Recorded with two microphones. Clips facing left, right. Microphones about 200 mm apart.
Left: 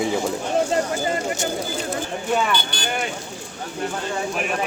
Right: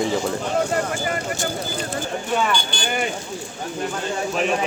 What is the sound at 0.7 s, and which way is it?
Speech, 25° left (ahead or behind).